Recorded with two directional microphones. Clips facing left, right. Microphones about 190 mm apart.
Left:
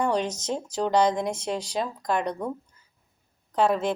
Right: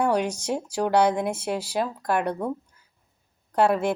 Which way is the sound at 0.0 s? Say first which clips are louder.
Right 2 dB; 10° right (ahead or behind).